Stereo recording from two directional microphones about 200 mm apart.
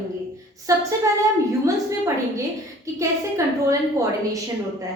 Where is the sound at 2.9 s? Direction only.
15° right (ahead or behind).